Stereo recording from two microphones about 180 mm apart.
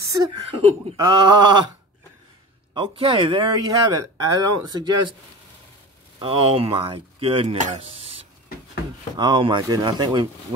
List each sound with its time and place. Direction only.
0.0 s a sound: 20° right (ahead or behind)
0.9 s speech: 20° right (ahead or behind)
2.7 s speech: 30° right (ahead or behind)
6.1 s speech: 30° right (ahead or behind)